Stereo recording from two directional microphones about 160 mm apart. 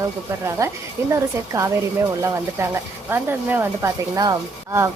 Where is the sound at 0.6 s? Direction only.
20° right (ahead or behind).